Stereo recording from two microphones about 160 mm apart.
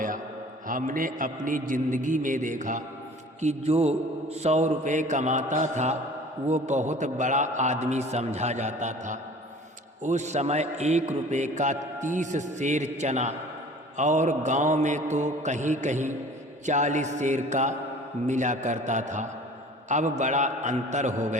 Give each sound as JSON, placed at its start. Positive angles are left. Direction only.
{"t": 0.7, "sound": "a man's voice", "side_deg": -55}
{"t": 3.4, "sound": "a man's voice", "side_deg": -40}